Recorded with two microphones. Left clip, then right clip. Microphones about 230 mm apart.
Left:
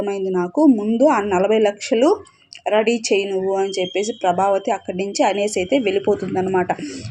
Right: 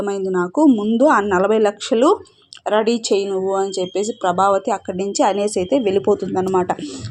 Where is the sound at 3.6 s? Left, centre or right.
Right.